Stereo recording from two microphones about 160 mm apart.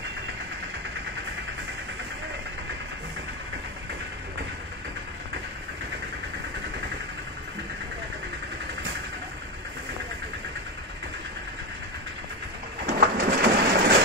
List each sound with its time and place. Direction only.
12.8 s bird: 65° right (ahead or behind)